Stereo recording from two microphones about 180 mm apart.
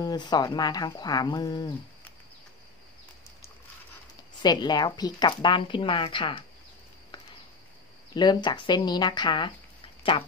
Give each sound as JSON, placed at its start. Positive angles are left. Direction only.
{"t": 0.0, "sound": "speech", "side_deg": 25}
{"t": 4.4, "sound": "speech", "side_deg": 25}
{"t": 8.1, "sound": "speech", "side_deg": 25}